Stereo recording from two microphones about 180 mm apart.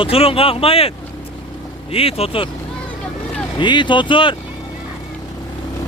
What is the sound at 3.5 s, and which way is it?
Speech, 25° left (ahead or behind).